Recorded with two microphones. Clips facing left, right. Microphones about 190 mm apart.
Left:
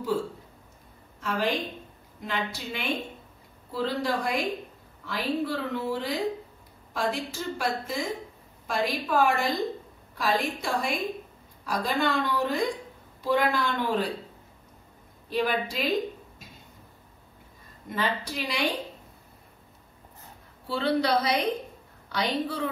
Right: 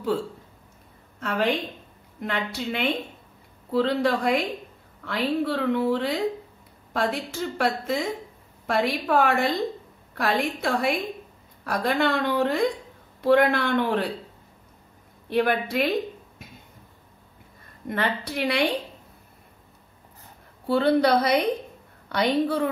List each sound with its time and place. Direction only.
1.2 s a woman's voice: 65° right (ahead or behind)
15.2 s a woman's voice: 60° right (ahead or behind)
17.8 s a woman's voice: 60° right (ahead or behind)
20.6 s a woman's voice: 55° right (ahead or behind)